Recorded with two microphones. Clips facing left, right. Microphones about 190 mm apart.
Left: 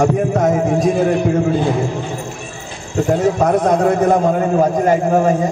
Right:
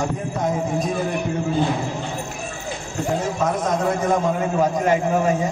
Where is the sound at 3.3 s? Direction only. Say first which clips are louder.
Left 7 dB; 65° left (ahead or behind); by 5.3 s 45° left (ahead or behind).